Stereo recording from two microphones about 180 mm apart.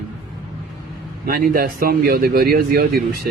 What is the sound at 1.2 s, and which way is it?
Speech, 55° right (ahead or behind).